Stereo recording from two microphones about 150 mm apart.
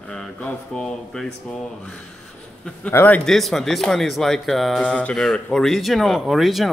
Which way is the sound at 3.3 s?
Centre (ahead or behind).